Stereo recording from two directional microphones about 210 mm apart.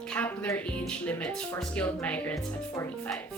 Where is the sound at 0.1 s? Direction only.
10° left (ahead or behind).